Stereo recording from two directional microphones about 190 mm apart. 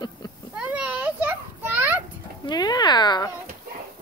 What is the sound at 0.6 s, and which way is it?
Children playing, 5° right (ahead or behind).